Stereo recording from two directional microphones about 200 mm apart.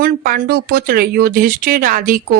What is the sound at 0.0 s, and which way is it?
Speech, 45° right (ahead or behind).